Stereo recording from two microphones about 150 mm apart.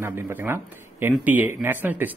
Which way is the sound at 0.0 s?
15° right (ahead or behind).